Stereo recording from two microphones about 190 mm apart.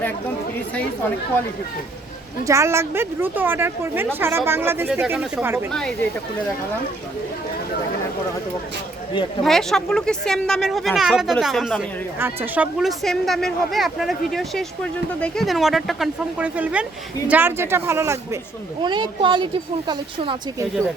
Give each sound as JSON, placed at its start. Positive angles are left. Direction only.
{"t": 2.5, "sound": "a woman's voice", "side_deg": -15}
{"t": 9.4, "sound": "a woman's voice", "side_deg": 0}
{"t": 18.8, "sound": "speech", "side_deg": -25}